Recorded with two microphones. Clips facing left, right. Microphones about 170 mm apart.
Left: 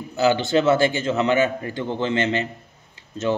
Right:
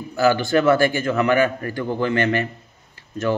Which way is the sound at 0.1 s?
20° left (ahead or behind).